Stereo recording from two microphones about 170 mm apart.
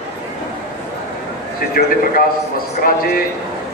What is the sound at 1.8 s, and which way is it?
Speech, 65° left (ahead or behind).